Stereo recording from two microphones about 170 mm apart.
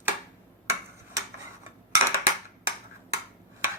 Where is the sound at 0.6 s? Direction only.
20° right (ahead or behind).